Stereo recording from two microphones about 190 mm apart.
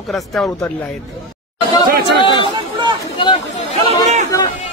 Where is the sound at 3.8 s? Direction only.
40° right (ahead or behind).